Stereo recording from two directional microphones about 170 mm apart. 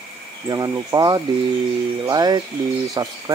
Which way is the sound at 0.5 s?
20° right (ahead or behind).